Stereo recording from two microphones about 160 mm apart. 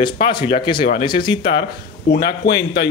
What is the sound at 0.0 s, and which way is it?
Speech, 30° left (ahead or behind).